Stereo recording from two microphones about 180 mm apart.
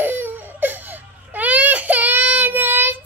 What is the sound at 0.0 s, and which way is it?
Crying, 10° right (ahead or behind).